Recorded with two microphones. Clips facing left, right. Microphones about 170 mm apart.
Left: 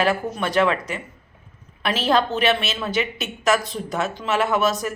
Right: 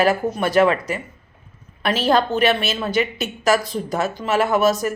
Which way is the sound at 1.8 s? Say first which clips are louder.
Right 2 dB; centre (ahead or behind).